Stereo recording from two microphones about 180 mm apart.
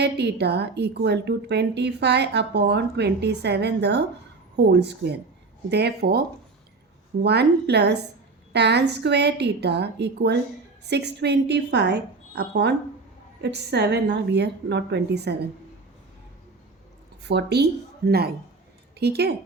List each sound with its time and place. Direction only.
0.0 s a woman's voice: 70° right (ahead or behind)
17.2 s a woman's voice: 65° right (ahead or behind)